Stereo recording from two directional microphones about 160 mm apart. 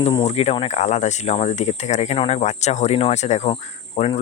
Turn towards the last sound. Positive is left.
turn(degrees=40)  # may be behind; listen again after turning